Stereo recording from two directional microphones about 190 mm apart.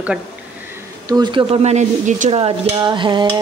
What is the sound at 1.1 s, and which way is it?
Speech, 25° right (ahead or behind).